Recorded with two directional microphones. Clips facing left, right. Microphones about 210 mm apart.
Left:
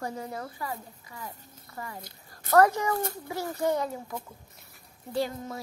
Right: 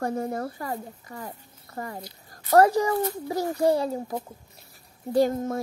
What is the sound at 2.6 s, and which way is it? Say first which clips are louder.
A child's voice: right 3 dB; 30° right (ahead or behind).